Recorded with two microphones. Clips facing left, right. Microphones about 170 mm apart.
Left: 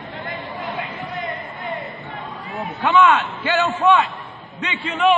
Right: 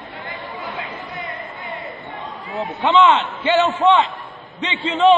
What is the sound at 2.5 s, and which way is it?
A man's voice, 20° right (ahead or behind).